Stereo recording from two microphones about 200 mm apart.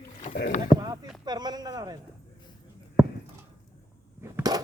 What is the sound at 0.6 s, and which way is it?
Speech, 20° right (ahead or behind).